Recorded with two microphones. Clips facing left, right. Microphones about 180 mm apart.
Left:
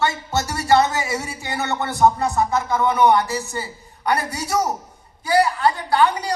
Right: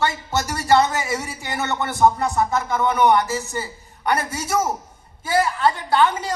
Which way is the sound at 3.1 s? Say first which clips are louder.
Even; 20° right (ahead or behind).